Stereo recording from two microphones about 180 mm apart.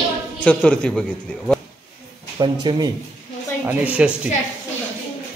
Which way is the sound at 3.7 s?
5° right (ahead or behind).